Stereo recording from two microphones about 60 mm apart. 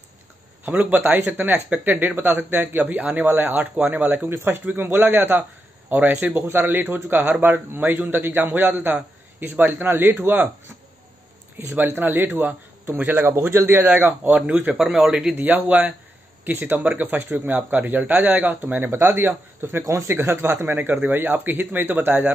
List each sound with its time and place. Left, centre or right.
0.7 s speech: right
11.5 s speech: right
14.4 s speech: right
15.3 s speech: right
19.8 s speech: right
20.1 s speech: right